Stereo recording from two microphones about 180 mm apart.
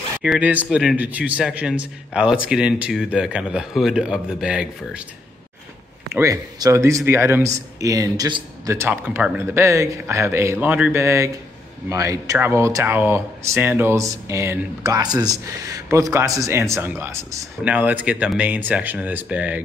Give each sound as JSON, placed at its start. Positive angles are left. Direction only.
{"t": 0.2, "sound": "a man's voice", "side_deg": -5}
{"t": 6.0, "sound": "speech", "side_deg": -15}
{"t": 8.6, "sound": "speech", "side_deg": -15}